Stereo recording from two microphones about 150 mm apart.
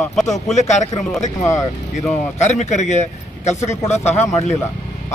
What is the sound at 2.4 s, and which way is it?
A man's voice, 50° left (ahead or behind).